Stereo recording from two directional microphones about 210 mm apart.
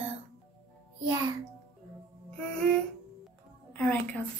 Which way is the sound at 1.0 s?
20° right (ahead or behind).